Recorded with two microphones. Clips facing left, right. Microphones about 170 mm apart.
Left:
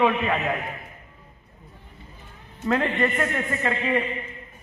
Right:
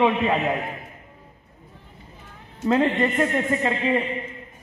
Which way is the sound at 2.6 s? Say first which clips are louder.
Right 3 dB; 20° right (ahead or behind).